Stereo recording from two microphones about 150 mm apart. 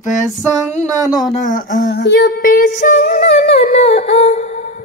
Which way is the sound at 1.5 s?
65° left (ahead or behind).